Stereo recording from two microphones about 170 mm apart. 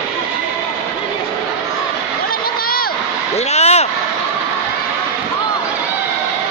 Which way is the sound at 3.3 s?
40° left (ahead or behind).